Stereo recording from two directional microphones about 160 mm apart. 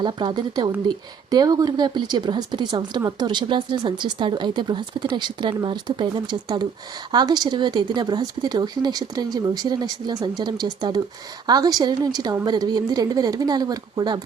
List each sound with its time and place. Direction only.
0.0 s speech: 30° right (ahead or behind)